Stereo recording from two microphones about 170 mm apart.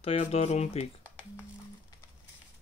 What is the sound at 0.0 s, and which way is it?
Speech, 35° left (ahead or behind).